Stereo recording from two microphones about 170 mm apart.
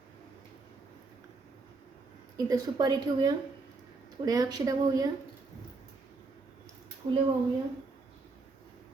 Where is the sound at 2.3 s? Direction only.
20° right (ahead or behind).